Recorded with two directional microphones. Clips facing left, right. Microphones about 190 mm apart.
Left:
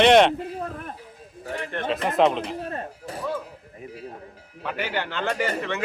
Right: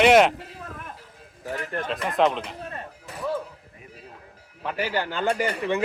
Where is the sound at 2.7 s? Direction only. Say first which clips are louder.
Left 5 dB; 40° left (ahead or behind).